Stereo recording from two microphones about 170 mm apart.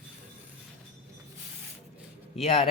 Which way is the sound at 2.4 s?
40° left (ahead or behind).